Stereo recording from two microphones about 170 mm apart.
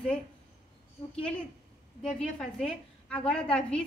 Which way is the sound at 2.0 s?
5° left (ahead or behind).